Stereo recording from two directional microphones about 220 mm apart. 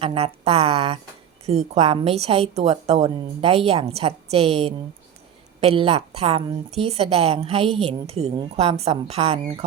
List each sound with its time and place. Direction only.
0.0 s a woman's voice: 25° right (ahead or behind)